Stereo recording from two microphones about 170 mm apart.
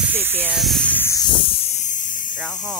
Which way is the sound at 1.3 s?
30° left (ahead or behind).